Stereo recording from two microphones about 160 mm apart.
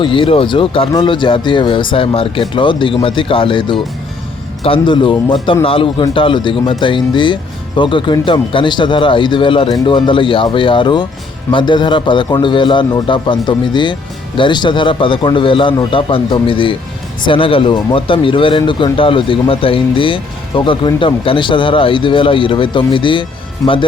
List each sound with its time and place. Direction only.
0.0 s speech: 30° left (ahead or behind)